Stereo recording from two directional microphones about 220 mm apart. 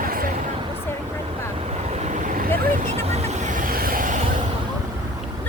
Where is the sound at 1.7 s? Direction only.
30° right (ahead or behind).